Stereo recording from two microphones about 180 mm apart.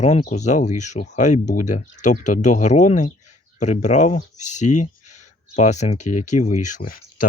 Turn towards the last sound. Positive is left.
turn(degrees=45)  # may be behind; listen again after turning